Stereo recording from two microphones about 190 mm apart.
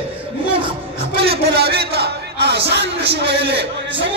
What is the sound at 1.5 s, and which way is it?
Speech, 60° right (ahead or behind).